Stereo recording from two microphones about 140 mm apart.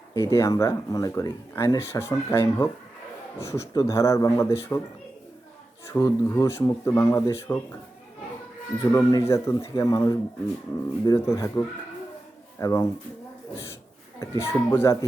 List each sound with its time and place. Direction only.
0.1 s speech: 20° left (ahead or behind)
5.9 s speech: 15° left (ahead or behind)
8.8 s speech: 25° left (ahead or behind)
12.5 s speech: 25° left (ahead or behind)
14.2 s speech: 20° left (ahead or behind)